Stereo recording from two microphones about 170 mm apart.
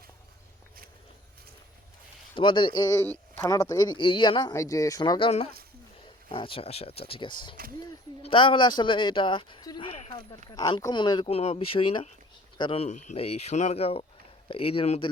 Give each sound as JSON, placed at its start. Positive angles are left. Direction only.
{"t": 2.3, "sound": "speech", "side_deg": 30}
{"t": 9.9, "sound": "a sound", "side_deg": 40}
{"t": 10.5, "sound": "speech", "side_deg": 20}